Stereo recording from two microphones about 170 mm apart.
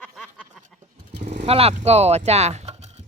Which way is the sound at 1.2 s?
40° right (ahead or behind).